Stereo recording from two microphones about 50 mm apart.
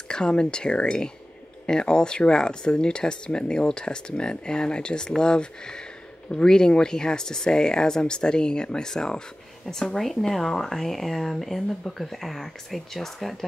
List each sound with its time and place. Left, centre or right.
0.1 s speech: centre